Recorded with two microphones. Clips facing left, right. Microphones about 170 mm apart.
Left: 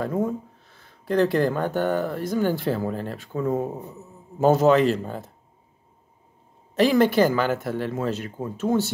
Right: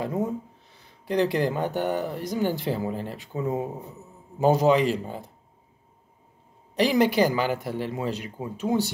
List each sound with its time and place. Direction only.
0.0 s speech: 15° right (ahead or behind)
6.9 s speech: 15° right (ahead or behind)